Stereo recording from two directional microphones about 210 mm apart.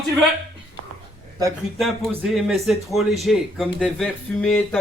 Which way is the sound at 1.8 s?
Centre (ahead or behind).